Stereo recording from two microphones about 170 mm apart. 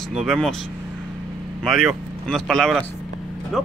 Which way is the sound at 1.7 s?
Centre (ahead or behind).